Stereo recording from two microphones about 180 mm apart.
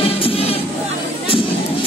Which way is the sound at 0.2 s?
35° left (ahead or behind).